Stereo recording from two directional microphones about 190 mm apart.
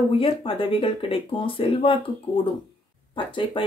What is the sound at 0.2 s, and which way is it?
Speech, 25° left (ahead or behind).